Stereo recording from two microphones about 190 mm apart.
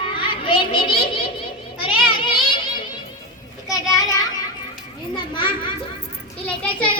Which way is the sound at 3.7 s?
20° left (ahead or behind).